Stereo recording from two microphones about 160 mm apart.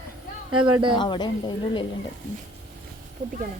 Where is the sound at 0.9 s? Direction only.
30° left (ahead or behind).